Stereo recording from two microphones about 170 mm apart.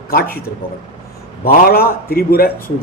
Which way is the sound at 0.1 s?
60° left (ahead or behind).